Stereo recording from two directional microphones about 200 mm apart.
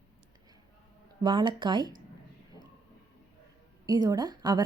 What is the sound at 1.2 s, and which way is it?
Speech, 25° right (ahead or behind).